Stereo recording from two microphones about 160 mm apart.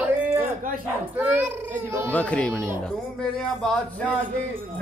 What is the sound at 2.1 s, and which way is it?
Speech, 5° left (ahead or behind).